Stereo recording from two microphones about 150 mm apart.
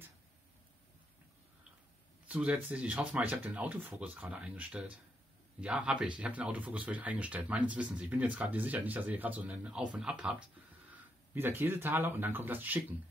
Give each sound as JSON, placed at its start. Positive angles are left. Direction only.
{"t": 2.2, "sound": "speech", "side_deg": -10}